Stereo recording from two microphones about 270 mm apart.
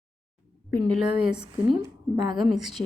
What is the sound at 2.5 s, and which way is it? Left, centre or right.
Speech, centre.